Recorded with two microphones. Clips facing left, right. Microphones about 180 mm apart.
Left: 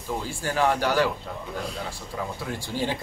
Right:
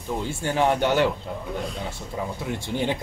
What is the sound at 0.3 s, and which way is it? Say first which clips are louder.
Speech: right 2 dB; 25° right (ahead or behind).